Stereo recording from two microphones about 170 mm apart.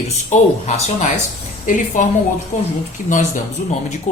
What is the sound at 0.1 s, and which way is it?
A man's voice, 40° left (ahead or behind).